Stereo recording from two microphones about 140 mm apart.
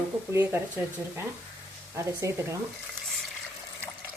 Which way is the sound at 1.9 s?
20° right (ahead or behind).